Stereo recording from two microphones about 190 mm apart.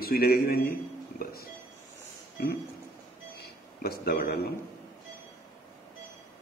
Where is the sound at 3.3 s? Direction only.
55° left (ahead or behind).